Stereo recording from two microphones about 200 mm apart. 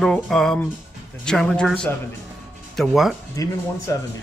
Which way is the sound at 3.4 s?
15° left (ahead or behind).